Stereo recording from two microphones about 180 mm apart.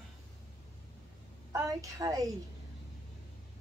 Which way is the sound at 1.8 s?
20° right (ahead or behind).